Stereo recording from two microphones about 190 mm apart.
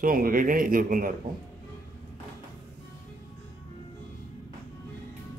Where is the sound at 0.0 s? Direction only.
50° right (ahead or behind).